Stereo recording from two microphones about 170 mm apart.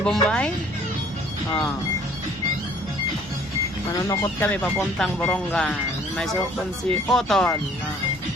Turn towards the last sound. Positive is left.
turn(degrees=5)  # may be behind; listen again after turning